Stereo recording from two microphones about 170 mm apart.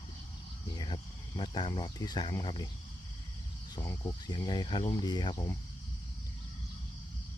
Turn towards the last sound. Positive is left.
turn(degrees=25)  # may be behind; listen again after turning